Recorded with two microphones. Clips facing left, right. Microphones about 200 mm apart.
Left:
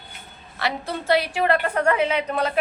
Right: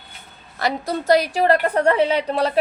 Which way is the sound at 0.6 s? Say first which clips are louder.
Right 4 dB; 40° right (ahead or behind).